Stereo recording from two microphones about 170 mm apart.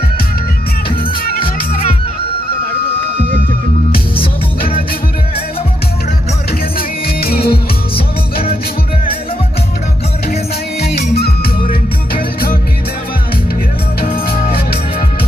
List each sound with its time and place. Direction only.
1.4 s music: 35° left (ahead or behind)
7.2 s music: 65° left (ahead or behind)
7.9 s music: 35° left (ahead or behind)
11.1 s music: 65° left (ahead or behind)